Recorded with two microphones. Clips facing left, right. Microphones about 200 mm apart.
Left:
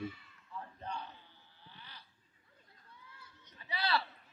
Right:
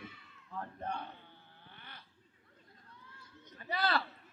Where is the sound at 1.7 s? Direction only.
55° right (ahead or behind).